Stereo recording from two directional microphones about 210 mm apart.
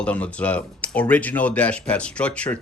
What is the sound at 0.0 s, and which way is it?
Speech, 5° left (ahead or behind).